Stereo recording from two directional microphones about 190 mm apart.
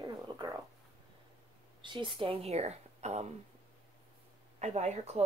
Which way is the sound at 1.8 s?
25° right (ahead or behind).